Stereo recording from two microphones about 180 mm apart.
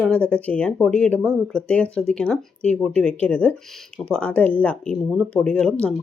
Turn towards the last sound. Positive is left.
turn(degrees=5)  # may be behind; listen again after turning